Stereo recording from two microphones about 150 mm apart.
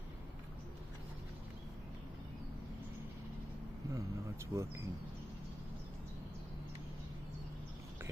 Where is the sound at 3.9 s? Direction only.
20° right (ahead or behind).